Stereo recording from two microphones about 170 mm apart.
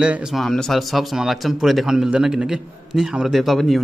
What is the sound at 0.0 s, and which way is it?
Speech, 5° right (ahead or behind).